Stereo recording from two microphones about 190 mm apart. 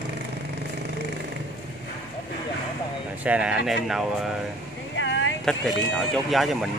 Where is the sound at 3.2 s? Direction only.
5° right (ahead or behind).